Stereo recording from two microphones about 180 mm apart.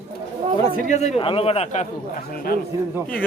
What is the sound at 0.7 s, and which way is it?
A man's voice, 40° left (ahead or behind).